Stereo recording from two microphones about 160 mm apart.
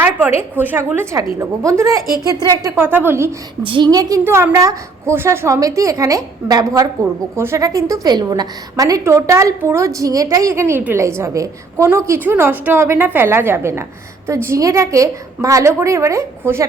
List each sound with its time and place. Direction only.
0.0 s a woman's voice: 15° right (ahead or behind)
3.6 s a woman's voice: 30° right (ahead or behind)
4.2 s a woman's voice: 15° right (ahead or behind)